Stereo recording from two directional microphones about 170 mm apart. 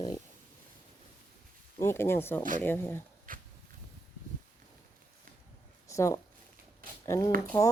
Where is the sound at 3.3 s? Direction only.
55° right (ahead or behind).